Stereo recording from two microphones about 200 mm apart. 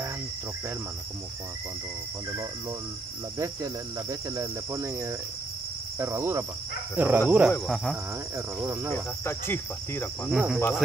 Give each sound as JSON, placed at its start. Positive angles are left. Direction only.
{"t": 3.3, "sound": "cricket", "side_deg": -15}
{"t": 8.9, "sound": "insect", "side_deg": 10}
{"t": 10.3, "sound": "cricket", "side_deg": -5}